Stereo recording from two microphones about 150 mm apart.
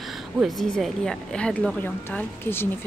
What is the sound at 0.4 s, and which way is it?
A woman's voice, centre (ahead or behind).